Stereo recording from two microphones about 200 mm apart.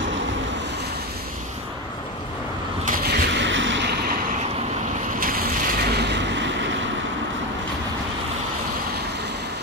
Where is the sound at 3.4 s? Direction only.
70° right (ahead or behind).